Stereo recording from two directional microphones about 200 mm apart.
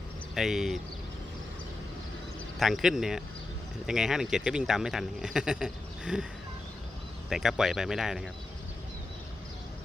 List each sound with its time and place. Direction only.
0.3 s speech: centre (ahead or behind)
2.6 s speech: centre (ahead or behind)
7.3 s speech: centre (ahead or behind)